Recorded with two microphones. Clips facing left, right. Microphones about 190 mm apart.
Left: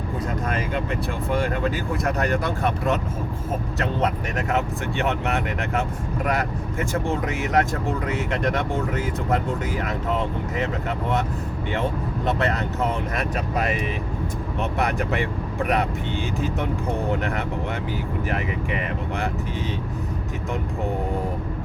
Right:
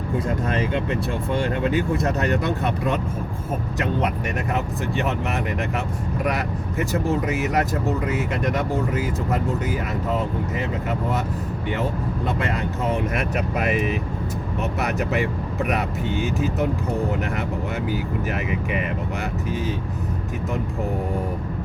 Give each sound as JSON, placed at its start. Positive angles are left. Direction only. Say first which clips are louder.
{"t": 1.3, "sound": "speech", "louder": "right 1 dB", "side_deg": -25}
{"t": 4.9, "sound": "speech", "louder": "left 2 dB", "side_deg": 0}
{"t": 7.3, "sound": "speech", "louder": "even", "side_deg": -5}
{"t": 14.8, "sound": "speech", "louder": "right 1 dB", "side_deg": 0}